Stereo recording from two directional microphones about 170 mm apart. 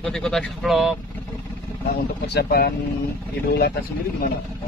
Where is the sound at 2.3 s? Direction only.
70° left (ahead or behind).